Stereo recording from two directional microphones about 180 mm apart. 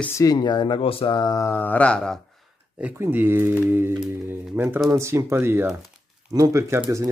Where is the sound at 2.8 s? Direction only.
10° right (ahead or behind).